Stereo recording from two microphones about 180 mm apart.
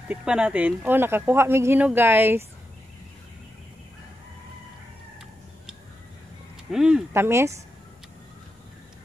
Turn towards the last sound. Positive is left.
turn(degrees=-15)  # may be behind; listen again after turning